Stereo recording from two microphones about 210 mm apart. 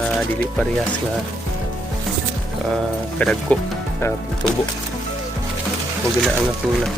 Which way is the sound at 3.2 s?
5° left (ahead or behind).